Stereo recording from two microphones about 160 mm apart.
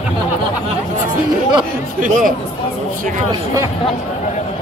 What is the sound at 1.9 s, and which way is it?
Speech, 55° right (ahead or behind).